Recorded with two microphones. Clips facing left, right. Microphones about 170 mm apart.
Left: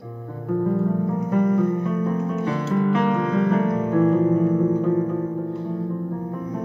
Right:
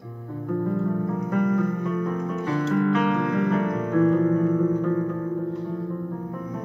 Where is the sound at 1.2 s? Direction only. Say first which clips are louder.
Left 3 dB; 30° left (ahead or behind).